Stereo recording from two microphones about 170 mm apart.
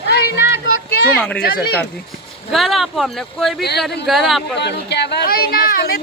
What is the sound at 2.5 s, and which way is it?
Speech, centre (ahead or behind).